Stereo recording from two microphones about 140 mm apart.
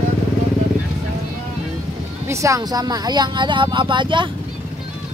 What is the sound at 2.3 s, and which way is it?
Speech, 20° right (ahead or behind).